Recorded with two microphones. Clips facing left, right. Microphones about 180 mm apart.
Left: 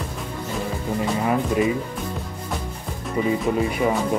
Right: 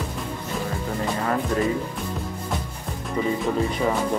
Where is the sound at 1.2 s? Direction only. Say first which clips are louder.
Left 2 dB; 10° left (ahead or behind).